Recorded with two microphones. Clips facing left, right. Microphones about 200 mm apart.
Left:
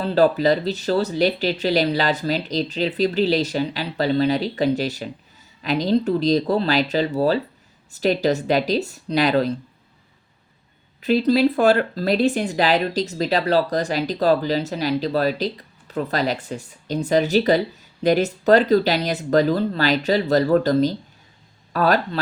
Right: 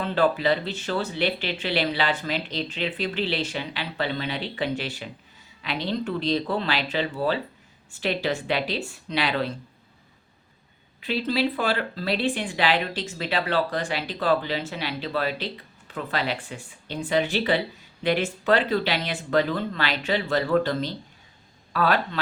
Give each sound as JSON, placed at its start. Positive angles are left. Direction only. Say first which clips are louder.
{"t": 0.0, "sound": "speech", "louder": "left 6 dB", "side_deg": 40}
{"t": 11.0, "sound": "speech", "louder": "left 8 dB", "side_deg": 40}